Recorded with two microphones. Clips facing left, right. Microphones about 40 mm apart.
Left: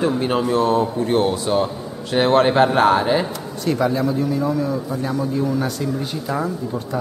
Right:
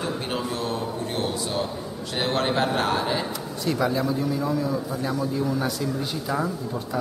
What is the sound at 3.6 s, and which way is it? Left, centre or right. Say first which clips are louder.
Speech: left 5 dB; centre.